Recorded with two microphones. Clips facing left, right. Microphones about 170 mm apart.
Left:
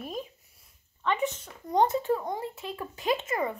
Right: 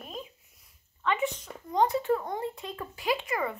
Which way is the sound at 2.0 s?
15° left (ahead or behind).